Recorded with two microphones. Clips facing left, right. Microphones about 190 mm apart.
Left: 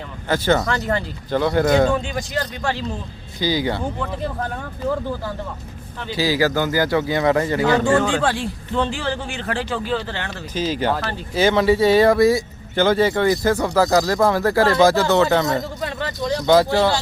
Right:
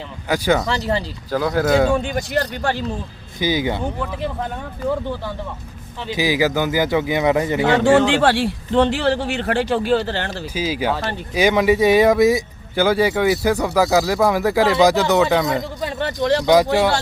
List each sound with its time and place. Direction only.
0.3 s speech: 10° right (ahead or behind)
2.0 s speech: 55° right (ahead or behind)
3.4 s speech: 20° right (ahead or behind)
6.1 s speech: 15° right (ahead or behind)
7.9 s speech: 85° right; by 9.9 s 65° right (ahead or behind)
9.9 s speech: 40° right (ahead or behind)
10.5 s speech: 10° right (ahead or behind)
14.3 s speech: 15° right (ahead or behind)
15.2 s speech: 5° right (ahead or behind)
16.2 s speech: 70° right (ahead or behind)
16.5 s speech: 15° right (ahead or behind)